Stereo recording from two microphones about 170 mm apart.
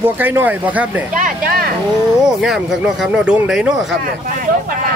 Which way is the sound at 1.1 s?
55° right (ahead or behind).